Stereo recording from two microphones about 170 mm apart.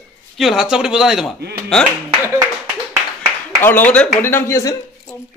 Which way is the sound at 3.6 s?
10° left (ahead or behind).